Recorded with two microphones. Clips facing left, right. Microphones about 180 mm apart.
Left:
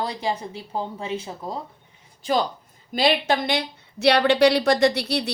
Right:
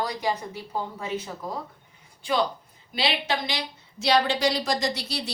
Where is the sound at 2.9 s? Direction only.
50° left (ahead or behind).